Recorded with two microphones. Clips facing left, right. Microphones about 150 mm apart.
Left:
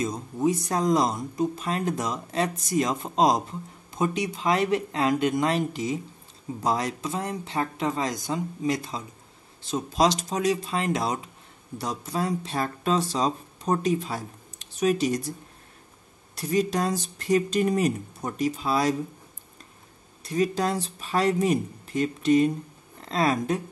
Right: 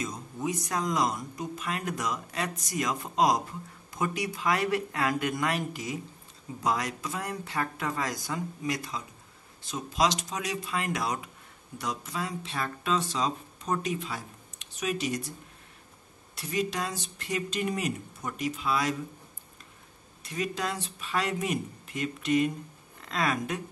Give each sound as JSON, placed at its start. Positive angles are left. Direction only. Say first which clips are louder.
{"t": 0.0, "sound": "speech", "louder": "left 8 dB", "side_deg": 35}
{"t": 16.3, "sound": "speech", "louder": "left 6 dB", "side_deg": 40}
{"t": 20.2, "sound": "speech", "louder": "left 7 dB", "side_deg": 35}